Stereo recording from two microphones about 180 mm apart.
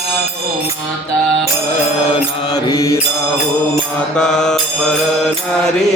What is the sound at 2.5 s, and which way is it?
Mantra, 20° left (ahead or behind).